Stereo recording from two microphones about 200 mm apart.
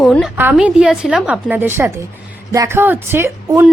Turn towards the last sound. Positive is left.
turn(degrees=-10)  # may be behind; listen again after turning